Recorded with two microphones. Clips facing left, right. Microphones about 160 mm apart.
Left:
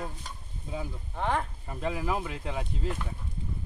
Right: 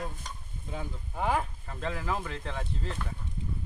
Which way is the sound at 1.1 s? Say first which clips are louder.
Even; 5° right (ahead or behind).